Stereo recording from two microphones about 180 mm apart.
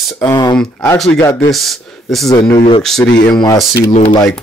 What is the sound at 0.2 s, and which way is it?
Speech, 25° left (ahead or behind).